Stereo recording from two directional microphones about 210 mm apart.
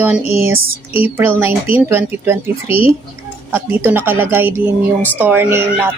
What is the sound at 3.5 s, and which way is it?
Speech, 10° right (ahead or behind).